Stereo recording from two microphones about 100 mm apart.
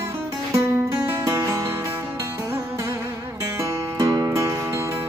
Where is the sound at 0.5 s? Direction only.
30° right (ahead or behind).